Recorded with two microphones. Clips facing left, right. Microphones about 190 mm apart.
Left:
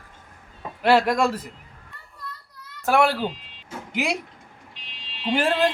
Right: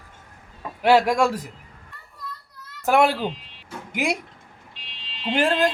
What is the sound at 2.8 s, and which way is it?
Speech, 15° right (ahead or behind).